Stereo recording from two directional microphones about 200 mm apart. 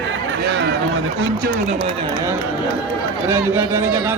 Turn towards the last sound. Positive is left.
turn(degrees=-15)  # may be behind; listen again after turning